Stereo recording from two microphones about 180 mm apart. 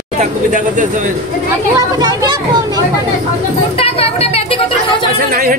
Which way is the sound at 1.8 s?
20° right (ahead or behind).